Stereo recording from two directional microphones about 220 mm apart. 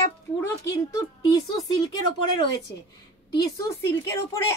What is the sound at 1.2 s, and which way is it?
Speech, 20° left (ahead or behind).